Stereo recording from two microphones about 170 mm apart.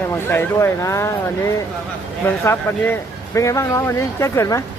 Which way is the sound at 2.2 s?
15° left (ahead or behind).